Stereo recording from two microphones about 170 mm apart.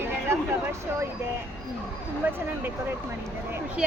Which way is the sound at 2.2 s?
10° right (ahead or behind).